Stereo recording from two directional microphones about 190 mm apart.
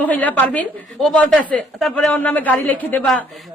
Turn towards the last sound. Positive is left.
turn(degrees=10)  # may be behind; listen again after turning